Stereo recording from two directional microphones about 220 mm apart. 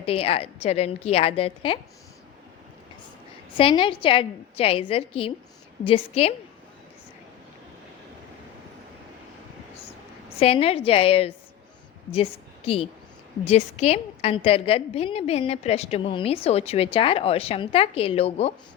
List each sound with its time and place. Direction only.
0.0 s a woman's voice: 25° left (ahead or behind)
3.6 s a woman's voice: 25° left (ahead or behind)
10.2 s a woman's voice: 25° left (ahead or behind)